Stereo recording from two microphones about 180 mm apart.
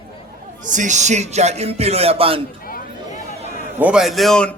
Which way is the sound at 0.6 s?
45° right (ahead or behind).